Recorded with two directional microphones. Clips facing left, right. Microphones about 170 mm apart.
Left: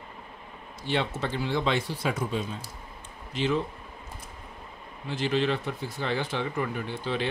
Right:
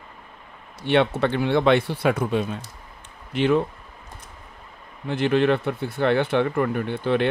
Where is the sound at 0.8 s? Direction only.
65° right (ahead or behind).